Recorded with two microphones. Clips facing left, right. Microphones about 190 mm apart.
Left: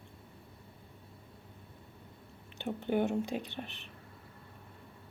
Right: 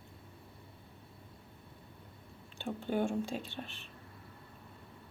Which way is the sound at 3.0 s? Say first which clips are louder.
Left 2 dB; 20° left (ahead or behind).